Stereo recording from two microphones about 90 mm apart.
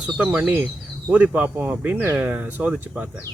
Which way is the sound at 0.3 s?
20° right (ahead or behind).